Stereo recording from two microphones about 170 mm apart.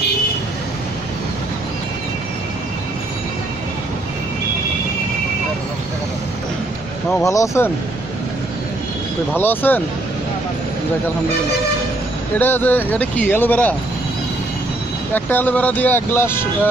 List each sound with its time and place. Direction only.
7.2 s speech: 20° left (ahead or behind)
9.4 s speech: 10° left (ahead or behind)
12.4 s speech: 10° left (ahead or behind)
15.1 s speech: 10° left (ahead or behind)